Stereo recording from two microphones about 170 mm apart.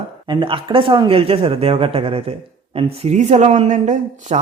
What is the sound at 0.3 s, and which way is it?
Speech, 30° right (ahead or behind).